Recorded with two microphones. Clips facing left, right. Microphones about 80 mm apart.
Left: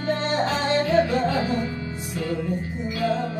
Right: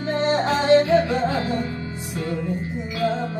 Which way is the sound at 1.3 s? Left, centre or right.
Right.